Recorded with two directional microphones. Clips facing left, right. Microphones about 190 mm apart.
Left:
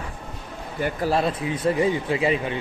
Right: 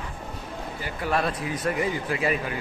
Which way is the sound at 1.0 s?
25° left (ahead or behind).